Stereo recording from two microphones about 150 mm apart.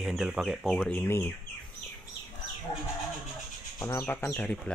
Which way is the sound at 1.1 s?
15° left (ahead or behind).